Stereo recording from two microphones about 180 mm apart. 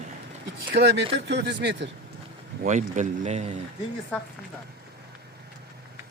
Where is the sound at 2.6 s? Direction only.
45° right (ahead or behind).